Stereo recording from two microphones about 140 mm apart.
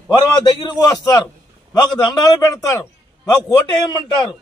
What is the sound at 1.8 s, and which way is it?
A man's voice, 25° left (ahead or behind).